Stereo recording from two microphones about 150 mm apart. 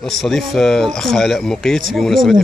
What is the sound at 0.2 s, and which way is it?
Speech, centre (ahead or behind).